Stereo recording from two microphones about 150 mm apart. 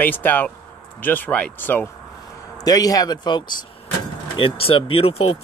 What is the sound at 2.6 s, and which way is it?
A man's voice, 25° left (ahead or behind).